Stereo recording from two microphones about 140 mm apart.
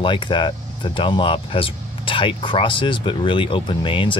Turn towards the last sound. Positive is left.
turn(degrees=35)  # may be behind; listen again after turning